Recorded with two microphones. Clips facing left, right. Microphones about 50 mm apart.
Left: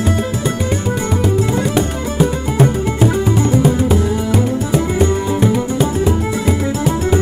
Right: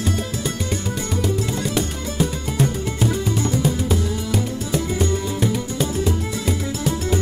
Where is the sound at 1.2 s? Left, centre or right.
Centre.